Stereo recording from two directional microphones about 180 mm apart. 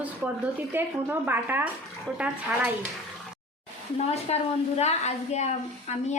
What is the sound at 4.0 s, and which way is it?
A woman's voice, 35° left (ahead or behind).